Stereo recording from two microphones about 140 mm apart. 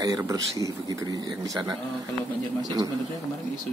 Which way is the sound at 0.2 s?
25° right (ahead or behind).